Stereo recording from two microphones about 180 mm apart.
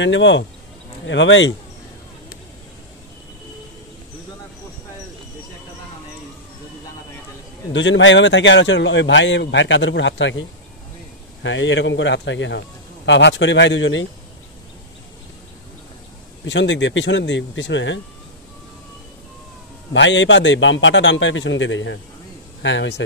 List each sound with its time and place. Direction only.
0.0 s speech: 90° left
7.7 s speech: 90° left
11.4 s speech: 90° left
16.4 s speech: 85° left
19.9 s speech: 90° left